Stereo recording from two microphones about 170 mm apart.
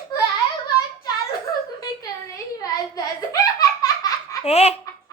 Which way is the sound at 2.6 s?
20° left (ahead or behind).